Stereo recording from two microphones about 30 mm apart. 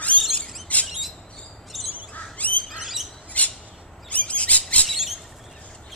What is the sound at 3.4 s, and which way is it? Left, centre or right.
Bird, left.